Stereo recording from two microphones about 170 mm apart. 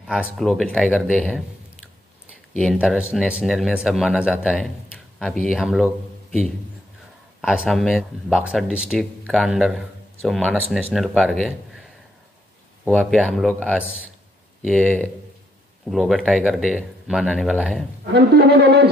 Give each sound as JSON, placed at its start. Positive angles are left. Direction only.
{"t": 0.0, "sound": "speech", "side_deg": -5}
{"t": 2.5, "sound": "speech", "side_deg": 5}
{"t": 2.8, "sound": "speech", "side_deg": -5}
{"t": 7.4, "sound": "speech", "side_deg": 0}
{"t": 12.8, "sound": "speech", "side_deg": 5}
{"t": 18.1, "sound": "a sound", "side_deg": -75}